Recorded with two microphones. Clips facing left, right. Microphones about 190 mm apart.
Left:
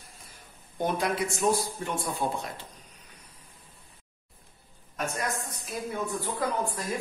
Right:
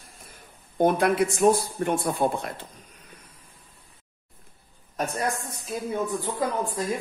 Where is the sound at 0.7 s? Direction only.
55° right (ahead or behind).